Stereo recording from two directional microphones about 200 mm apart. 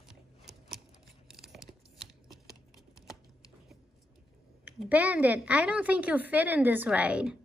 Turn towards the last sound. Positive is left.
turn(degrees=-5)  # may be behind; listen again after turning